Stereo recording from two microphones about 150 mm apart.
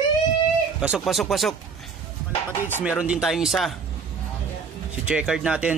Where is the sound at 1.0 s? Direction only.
Centre (ahead or behind).